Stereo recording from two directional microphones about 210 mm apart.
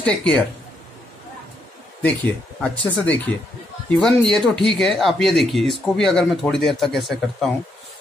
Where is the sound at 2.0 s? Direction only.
10° left (ahead or behind).